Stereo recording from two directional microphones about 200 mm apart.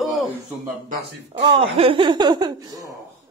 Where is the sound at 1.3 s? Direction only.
30° right (ahead or behind).